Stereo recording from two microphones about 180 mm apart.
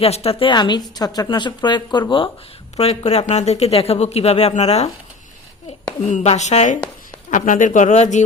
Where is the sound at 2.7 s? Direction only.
35° left (ahead or behind).